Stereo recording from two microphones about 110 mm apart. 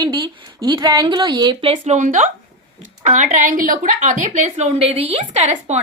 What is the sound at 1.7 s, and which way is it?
Speech, 90° right.